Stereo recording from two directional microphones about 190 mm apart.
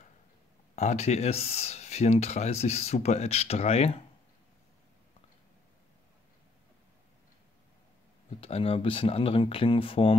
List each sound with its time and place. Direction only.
0.7 s speech: 35° left (ahead or behind)
8.4 s speech: 30° left (ahead or behind)